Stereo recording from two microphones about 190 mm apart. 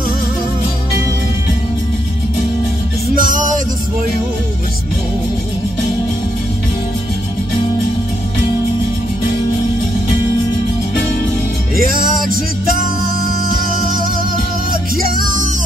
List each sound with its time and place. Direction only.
3.2 s music: 45° right (ahead or behind)
11.7 s music: 50° right (ahead or behind)
15.0 s music: 45° right (ahead or behind)